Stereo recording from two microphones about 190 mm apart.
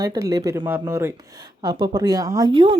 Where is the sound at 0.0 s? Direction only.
20° right (ahead or behind).